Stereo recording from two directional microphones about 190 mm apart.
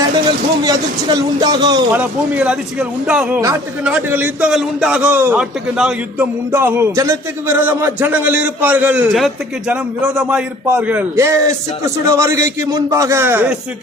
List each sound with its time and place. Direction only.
0.6 s a man's voice: 20° right (ahead or behind)
1.9 s a man's voice: 10° right (ahead or behind)